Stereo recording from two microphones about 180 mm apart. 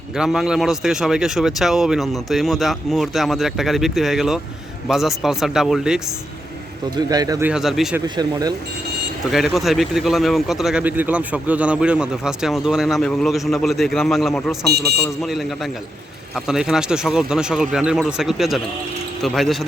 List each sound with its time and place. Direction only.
0.2 s speech: 5° right (ahead or behind)
6.9 s speech: 20° right (ahead or behind)
7.4 s speech: 5° right (ahead or behind)
8.0 s speech: 25° right (ahead or behind)
9.2 s speech: centre (ahead or behind)
14.7 s speech: 65° right (ahead or behind)
15.2 s speech: centre (ahead or behind)